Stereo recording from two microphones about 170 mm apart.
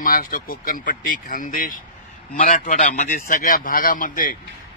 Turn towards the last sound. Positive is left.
turn(degrees=55)  # may be behind; listen again after turning